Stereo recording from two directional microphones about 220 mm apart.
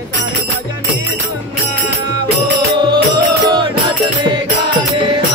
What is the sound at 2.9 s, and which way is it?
Music, 20° right (ahead or behind).